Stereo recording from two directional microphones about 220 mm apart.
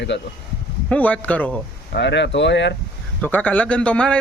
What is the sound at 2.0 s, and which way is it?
Speech, 55° left (ahead or behind).